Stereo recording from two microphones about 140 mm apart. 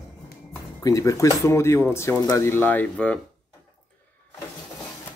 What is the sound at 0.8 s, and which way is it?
Speech, 25° left (ahead or behind).